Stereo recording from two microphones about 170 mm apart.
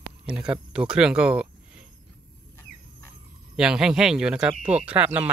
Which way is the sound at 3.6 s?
5° right (ahead or behind).